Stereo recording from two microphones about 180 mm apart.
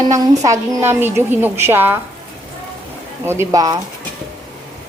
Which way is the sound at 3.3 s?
15° right (ahead or behind).